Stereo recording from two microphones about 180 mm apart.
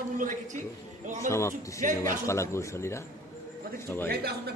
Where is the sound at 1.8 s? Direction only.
45° right (ahead or behind).